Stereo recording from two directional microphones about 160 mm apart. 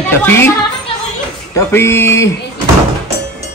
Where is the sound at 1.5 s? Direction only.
15° left (ahead or behind).